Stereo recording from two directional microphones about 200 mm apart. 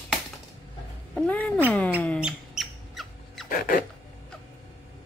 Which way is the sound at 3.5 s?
45° left (ahead or behind).